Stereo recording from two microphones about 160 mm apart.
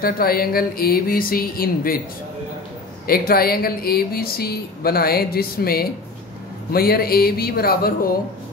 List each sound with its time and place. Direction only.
0.0 s speech: 70° left (ahead or behind)
3.1 s speech: 70° left (ahead or behind)